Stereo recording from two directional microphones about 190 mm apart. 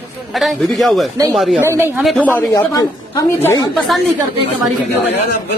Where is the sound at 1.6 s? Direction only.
15° right (ahead or behind).